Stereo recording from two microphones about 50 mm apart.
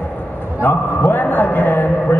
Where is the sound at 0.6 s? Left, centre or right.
Left.